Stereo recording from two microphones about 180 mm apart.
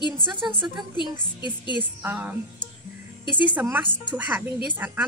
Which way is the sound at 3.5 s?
10° right (ahead or behind).